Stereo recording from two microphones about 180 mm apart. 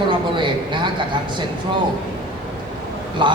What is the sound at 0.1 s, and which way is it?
Speech, 25° right (ahead or behind).